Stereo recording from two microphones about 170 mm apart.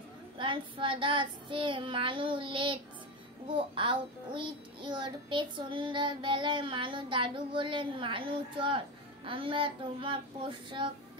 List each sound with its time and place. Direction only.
0.4 s child singing: 30° right (ahead or behind)